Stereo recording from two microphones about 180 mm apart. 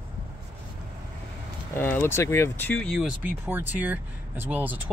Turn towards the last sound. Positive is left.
turn(degrees=-10)  # may be behind; listen again after turning